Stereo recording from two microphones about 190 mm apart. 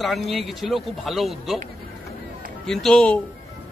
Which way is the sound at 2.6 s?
Centre (ahead or behind).